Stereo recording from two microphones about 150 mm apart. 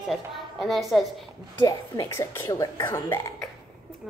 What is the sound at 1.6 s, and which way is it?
Speech, 20° left (ahead or behind).